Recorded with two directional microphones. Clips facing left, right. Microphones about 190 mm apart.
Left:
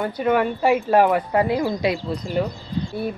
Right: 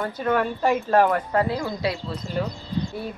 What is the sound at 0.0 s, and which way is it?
Speech, 15° left (ahead or behind).